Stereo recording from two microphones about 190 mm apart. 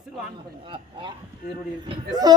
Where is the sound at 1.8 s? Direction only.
20° right (ahead or behind).